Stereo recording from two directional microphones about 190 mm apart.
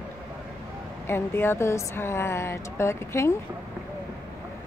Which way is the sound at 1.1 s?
10° left (ahead or behind).